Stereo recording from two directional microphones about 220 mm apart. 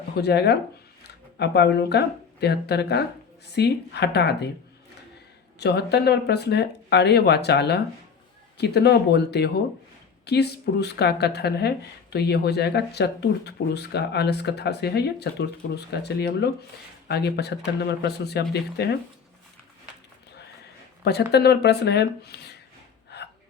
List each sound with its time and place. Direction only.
0.2 s speech: 50° left (ahead or behind)
5.5 s speech: 50° left (ahead or behind)
21.0 s speech: 50° left (ahead or behind)
23.0 s gasp: 50° left (ahead or behind)